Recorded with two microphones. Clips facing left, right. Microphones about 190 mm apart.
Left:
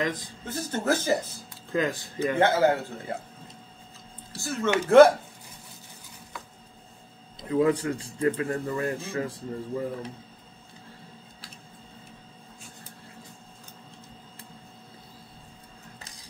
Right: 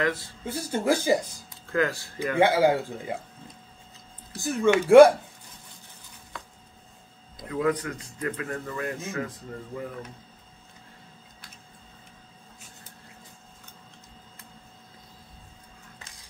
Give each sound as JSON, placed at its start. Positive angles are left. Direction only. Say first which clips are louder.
{"t": 0.0, "sound": "speech", "louder": "right 2 dB", "side_deg": 15}
{"t": 0.5, "sound": "a man's voice", "louder": "right 2 dB", "side_deg": -10}
{"t": 1.7, "sound": "speech", "louder": "right 1 dB", "side_deg": 20}
{"t": 2.3, "sound": "a man's voice", "louder": "right 2 dB", "side_deg": -10}
{"t": 4.4, "sound": "a man's voice", "louder": "right 4 dB", "side_deg": -15}
{"t": 7.3, "sound": "speech", "louder": "left 3 dB", "side_deg": 25}